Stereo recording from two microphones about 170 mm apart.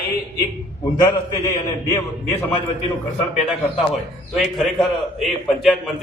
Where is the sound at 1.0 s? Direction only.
20° left (ahead or behind).